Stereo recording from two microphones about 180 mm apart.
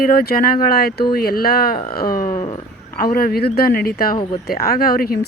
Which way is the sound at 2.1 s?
50° left (ahead or behind).